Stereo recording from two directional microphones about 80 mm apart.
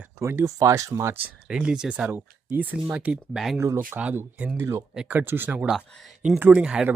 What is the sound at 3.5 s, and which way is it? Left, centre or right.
Speech, right.